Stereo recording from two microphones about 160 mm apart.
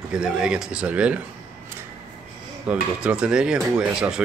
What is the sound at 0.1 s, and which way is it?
Speech, 5° right (ahead or behind).